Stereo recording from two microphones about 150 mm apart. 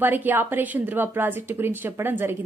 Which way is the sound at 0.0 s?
10° right (ahead or behind).